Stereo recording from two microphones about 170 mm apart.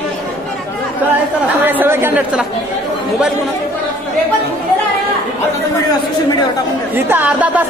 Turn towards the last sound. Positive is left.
turn(degrees=-10)  # may be behind; listen again after turning